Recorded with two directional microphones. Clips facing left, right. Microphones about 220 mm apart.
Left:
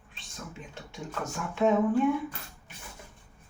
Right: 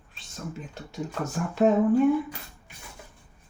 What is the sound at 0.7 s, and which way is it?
Speech, 40° right (ahead or behind).